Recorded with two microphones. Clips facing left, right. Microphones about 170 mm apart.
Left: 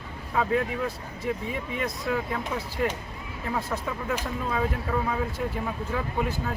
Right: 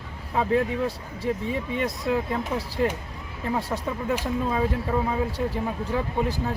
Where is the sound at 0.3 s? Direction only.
30° right (ahead or behind).